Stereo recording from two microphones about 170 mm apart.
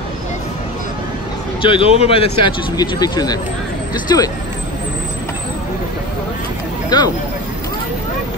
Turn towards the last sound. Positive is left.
turn(degrees=25)  # may be behind; listen again after turning